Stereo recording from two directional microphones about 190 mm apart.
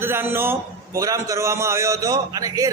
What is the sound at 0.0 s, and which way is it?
A man's voice, 10° right (ahead or behind).